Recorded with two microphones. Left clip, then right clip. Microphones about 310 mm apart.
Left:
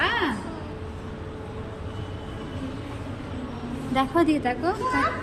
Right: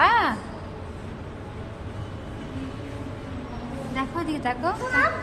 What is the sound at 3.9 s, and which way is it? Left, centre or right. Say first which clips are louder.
Speech: left 7 dB; centre.